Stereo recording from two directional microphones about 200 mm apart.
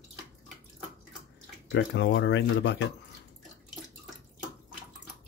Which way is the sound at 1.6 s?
60° left (ahead or behind).